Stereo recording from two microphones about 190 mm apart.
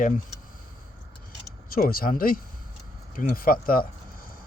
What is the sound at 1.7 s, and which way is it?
Speech, 50° left (ahead or behind).